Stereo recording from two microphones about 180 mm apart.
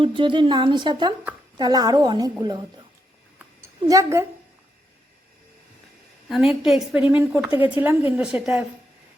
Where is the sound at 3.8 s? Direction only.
15° right (ahead or behind).